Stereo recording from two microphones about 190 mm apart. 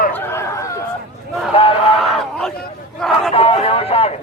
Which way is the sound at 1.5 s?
30° left (ahead or behind).